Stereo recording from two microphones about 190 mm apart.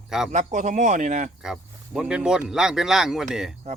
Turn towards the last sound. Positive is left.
turn(degrees=0)  # may be behind; listen again after turning